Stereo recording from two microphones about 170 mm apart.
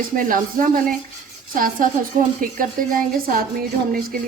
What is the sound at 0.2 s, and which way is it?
A woman's voice, 55° right (ahead or behind).